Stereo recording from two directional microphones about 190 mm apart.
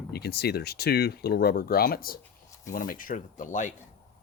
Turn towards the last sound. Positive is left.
turn(degrees=40)  # may be behind; listen again after turning